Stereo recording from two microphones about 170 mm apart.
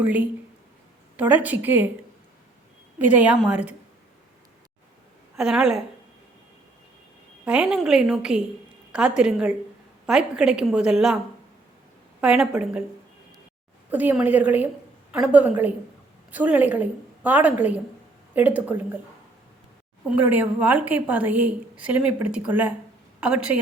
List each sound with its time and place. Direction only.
0.0 s a woman's voice: 10° right (ahead or behind)
3.2 s a woman's voice: 5° right (ahead or behind)
5.4 s a woman's voice: 5° right (ahead or behind)
7.4 s a woman's voice: 10° right (ahead or behind)
12.2 s a woman's voice: 10° right (ahead or behind)
13.9 s a woman's voice: 10° right (ahead or behind)
20.1 s a woman's voice: 10° right (ahead or behind)